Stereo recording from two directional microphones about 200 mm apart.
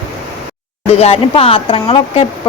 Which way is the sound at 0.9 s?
30° left (ahead or behind).